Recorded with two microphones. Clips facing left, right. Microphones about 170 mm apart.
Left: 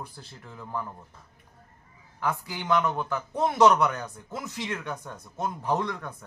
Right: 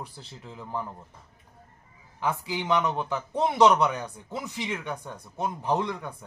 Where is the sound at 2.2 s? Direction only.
15° right (ahead or behind).